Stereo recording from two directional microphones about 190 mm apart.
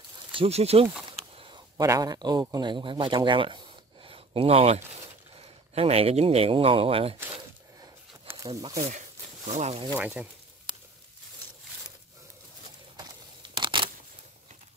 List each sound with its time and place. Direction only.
0.3 s speech: 30° right (ahead or behind)
7.8 s a sound: 15° right (ahead or behind)
8.5 s speech: 20° right (ahead or behind)
9.5 s speech: 35° right (ahead or behind)
9.9 s speech: 10° right (ahead or behind)
12.9 s scissors: 25° right (ahead or behind)